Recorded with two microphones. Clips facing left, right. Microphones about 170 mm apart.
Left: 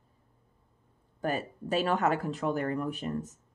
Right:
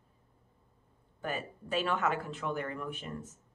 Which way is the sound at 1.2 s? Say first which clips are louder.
Left 6 dB; 40° left (ahead or behind).